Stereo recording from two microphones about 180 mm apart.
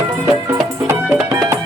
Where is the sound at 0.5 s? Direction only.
15° right (ahead or behind).